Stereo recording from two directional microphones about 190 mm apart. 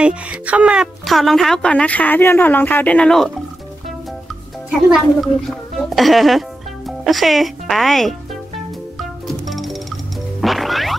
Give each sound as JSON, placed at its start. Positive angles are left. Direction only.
{"t": 0.0, "sound": "a woman's voice", "side_deg": -5}
{"t": 4.6, "sound": "speech", "side_deg": 0}
{"t": 9.3, "sound": "music", "side_deg": 0}